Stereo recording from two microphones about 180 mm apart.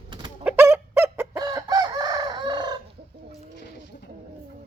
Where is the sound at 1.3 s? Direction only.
20° right (ahead or behind).